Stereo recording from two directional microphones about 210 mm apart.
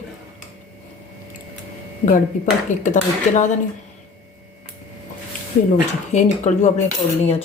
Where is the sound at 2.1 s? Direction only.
35° left (ahead or behind).